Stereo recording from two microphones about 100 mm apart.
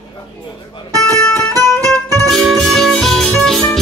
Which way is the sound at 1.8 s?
35° right (ahead or behind).